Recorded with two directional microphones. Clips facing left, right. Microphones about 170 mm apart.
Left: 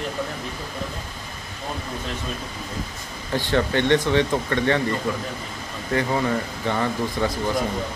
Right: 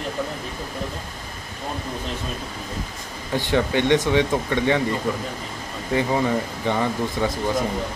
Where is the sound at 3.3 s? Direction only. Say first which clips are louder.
Right 1 dB; 15° right (ahead or behind).